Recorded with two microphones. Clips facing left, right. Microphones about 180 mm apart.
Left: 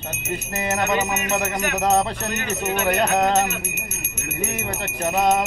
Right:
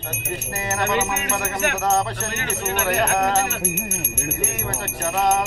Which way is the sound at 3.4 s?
10° left (ahead or behind).